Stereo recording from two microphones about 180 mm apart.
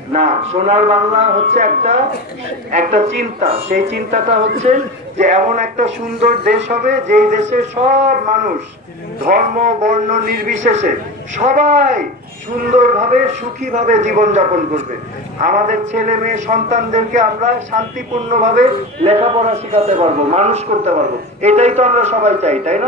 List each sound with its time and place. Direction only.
0.1 s a man's voice: 35° right (ahead or behind)